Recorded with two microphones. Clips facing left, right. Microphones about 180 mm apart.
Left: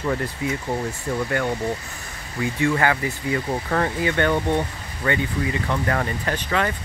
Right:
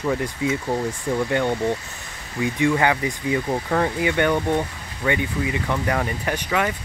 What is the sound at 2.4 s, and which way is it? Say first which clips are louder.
Speech: right 1 dB; 15° right (ahead or behind).